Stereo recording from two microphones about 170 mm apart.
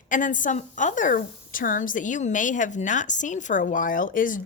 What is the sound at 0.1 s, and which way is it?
A woman's voice, 50° left (ahead or behind).